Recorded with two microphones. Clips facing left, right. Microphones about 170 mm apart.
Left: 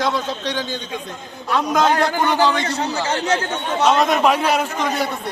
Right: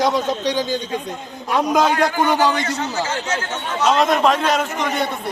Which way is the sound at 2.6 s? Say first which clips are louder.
Left 1 dB; 35° left (ahead or behind).